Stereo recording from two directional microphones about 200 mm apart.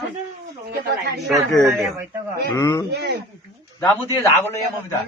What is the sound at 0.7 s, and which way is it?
Speech, 55° right (ahead or behind).